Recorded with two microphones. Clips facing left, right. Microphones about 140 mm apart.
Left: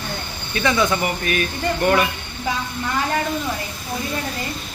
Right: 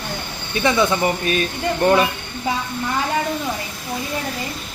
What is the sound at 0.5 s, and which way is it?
Speech, 20° right (ahead or behind).